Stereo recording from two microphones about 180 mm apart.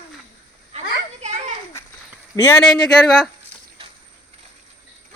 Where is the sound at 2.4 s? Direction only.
15° left (ahead or behind).